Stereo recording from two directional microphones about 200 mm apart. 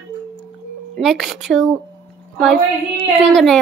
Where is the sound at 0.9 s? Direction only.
Centre (ahead or behind).